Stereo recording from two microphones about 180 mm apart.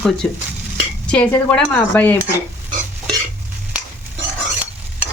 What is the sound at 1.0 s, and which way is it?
A woman's voice, 5° left (ahead or behind).